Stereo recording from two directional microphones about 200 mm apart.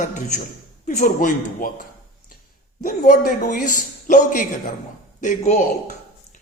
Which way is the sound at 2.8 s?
45° left (ahead or behind).